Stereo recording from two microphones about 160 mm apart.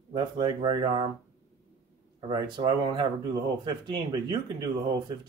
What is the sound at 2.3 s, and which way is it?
Speech, 30° right (ahead or behind).